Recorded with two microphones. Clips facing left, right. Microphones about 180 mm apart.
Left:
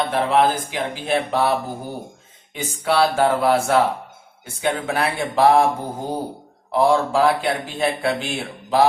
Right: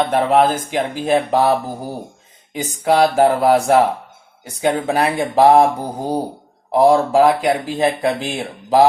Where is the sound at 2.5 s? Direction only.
35° right (ahead or behind).